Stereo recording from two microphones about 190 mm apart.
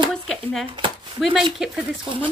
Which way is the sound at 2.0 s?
25° right (ahead or behind).